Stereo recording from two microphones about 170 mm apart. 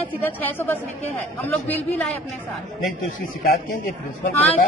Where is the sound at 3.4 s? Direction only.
55° left (ahead or behind).